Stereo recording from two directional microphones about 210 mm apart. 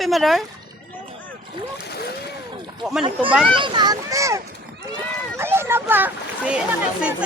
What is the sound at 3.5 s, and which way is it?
Speech, 20° right (ahead or behind).